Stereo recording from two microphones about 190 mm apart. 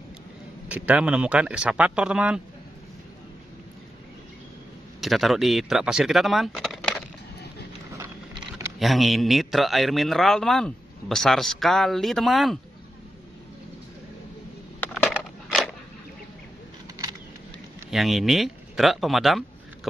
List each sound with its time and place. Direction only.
0.7 s a man's voice: 10° right (ahead or behind)
5.0 s speech: centre (ahead or behind)
8.0 s a sound: 15° right (ahead or behind)
8.7 s a man's voice: centre (ahead or behind)
15.4 s a sound: centre (ahead or behind)
17.9 s speech: centre (ahead or behind)